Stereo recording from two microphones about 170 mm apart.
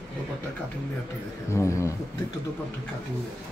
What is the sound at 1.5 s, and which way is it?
Speech, 15° left (ahead or behind).